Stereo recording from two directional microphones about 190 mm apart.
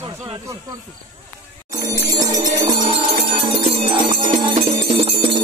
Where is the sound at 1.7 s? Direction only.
20° right (ahead or behind).